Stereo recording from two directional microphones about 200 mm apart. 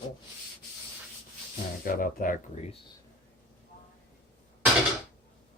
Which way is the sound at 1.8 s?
45° left (ahead or behind).